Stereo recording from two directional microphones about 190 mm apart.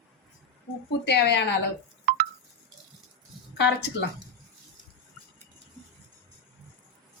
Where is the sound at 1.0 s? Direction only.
65° left (ahead or behind).